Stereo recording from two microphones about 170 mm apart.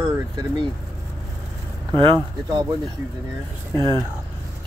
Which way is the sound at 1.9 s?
25° right (ahead or behind).